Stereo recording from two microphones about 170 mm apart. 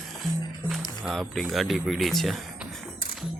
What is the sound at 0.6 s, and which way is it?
Music, 15° right (ahead or behind).